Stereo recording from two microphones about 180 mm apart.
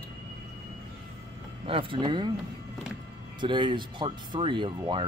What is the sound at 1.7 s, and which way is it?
Speech, 30° right (ahead or behind).